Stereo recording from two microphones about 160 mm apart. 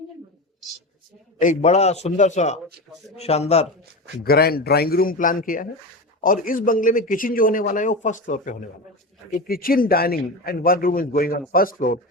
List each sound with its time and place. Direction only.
1.4 s a man's voice: 50° left (ahead or behind)
4.2 s a man's voice: 75° left (ahead or behind); by 8.5 s 50° left (ahead or behind)
9.3 s a man's voice: 65° left (ahead or behind)